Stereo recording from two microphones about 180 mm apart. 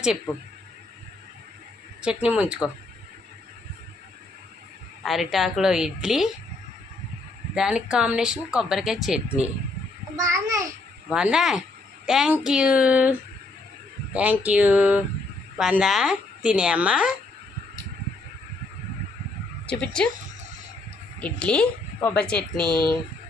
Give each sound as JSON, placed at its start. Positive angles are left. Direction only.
{"t": 2.0, "sound": "speech", "side_deg": -5}
{"t": 5.0, "sound": "speech", "side_deg": 0}
{"t": 7.5, "sound": "speech", "side_deg": -5}
{"t": 10.2, "sound": "a child's voice", "side_deg": -20}
{"t": 11.1, "sound": "a woman's voice", "side_deg": -5}
{"t": 19.8, "sound": "speech", "side_deg": 5}
{"t": 21.2, "sound": "speech", "side_deg": 5}